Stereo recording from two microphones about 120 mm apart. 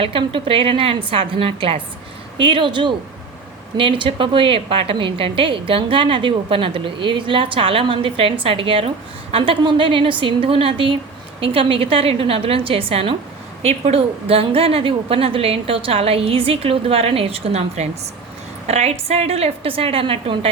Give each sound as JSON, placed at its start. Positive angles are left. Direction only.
{"t": 0.0, "sound": "a woman's voice", "side_deg": -45}